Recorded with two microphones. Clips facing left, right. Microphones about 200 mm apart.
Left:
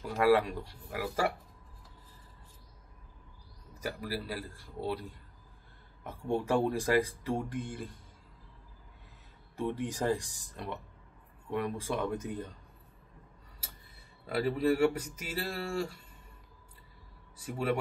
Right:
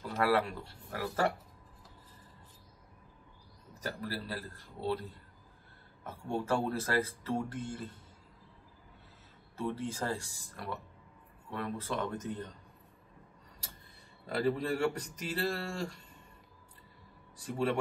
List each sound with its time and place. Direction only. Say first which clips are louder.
0.2 s speech: left 4 dB; 15° left (ahead or behind)
3.8 s speech: left 2 dB; 10° left (ahead or behind)
6.0 s speech: left 3 dB; 15° left (ahead or behind)
9.6 s speech: left 3 dB; 15° left (ahead or behind)
14.2 s speech: left 3 dB; 5° left (ahead or behind)
17.4 s speech: even; 10° left (ahead or behind)